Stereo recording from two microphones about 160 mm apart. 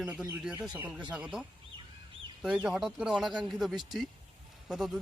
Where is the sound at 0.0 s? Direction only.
5° right (ahead or behind).